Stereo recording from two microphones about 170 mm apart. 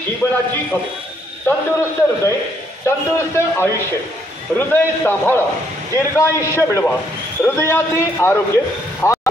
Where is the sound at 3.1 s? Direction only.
15° left (ahead or behind).